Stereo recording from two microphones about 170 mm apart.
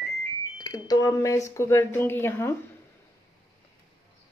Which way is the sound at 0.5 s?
25° left (ahead or behind).